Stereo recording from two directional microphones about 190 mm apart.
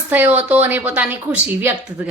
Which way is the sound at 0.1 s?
10° right (ahead or behind).